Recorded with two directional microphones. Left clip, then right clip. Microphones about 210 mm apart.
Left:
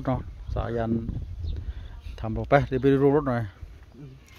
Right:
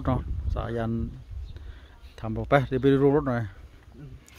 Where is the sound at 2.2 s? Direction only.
Centre (ahead or behind).